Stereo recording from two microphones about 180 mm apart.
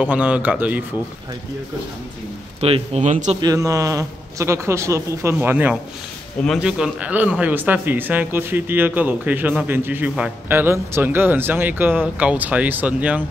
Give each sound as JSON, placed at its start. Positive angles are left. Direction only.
{"t": 0.0, "sound": "a man's voice", "side_deg": -5}
{"t": 2.6, "sound": "speech", "side_deg": -35}
{"t": 3.3, "sound": "a man's voice", "side_deg": -20}